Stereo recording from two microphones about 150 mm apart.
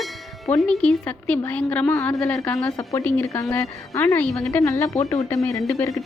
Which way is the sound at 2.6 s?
20° left (ahead or behind).